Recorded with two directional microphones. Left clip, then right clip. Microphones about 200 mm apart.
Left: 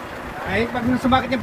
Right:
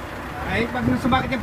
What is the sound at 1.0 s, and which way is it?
Speech, 10° right (ahead or behind).